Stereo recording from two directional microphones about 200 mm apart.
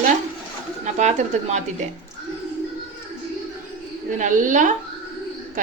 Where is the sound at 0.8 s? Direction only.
35° right (ahead or behind).